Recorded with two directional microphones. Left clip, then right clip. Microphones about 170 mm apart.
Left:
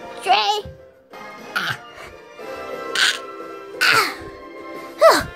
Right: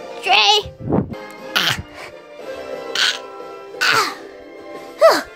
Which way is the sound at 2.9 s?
5° right (ahead or behind).